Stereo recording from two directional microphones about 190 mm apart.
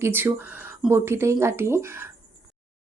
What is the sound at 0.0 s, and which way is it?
A woman's voice, 10° right (ahead or behind).